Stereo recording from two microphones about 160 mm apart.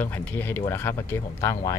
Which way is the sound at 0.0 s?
10° left (ahead or behind).